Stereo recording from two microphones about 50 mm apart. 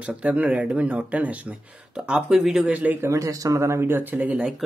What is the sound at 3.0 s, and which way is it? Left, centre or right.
Speech, right.